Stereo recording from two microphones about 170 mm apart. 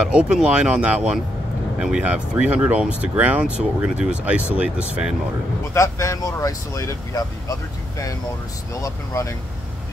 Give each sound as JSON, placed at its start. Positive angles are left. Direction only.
{"t": 0.0, "sound": "speech", "side_deg": -5}
{"t": 5.8, "sound": "speech", "side_deg": 20}
{"t": 8.8, "sound": "speech", "side_deg": 20}